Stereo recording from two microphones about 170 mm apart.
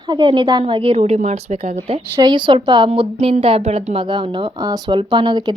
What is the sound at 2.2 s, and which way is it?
A woman's voice, 25° right (ahead or behind).